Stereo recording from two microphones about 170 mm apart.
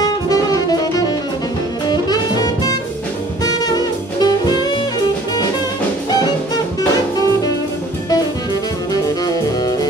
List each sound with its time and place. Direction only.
0.0 s music: 20° left (ahead or behind)
1.9 s saxophone: 25° left (ahead or behind)
4.2 s jazz: 25° left (ahead or behind)
9.2 s music: 25° left (ahead or behind)